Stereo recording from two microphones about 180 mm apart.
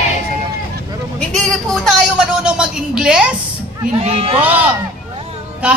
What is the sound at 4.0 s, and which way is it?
Speech, 35° right (ahead or behind).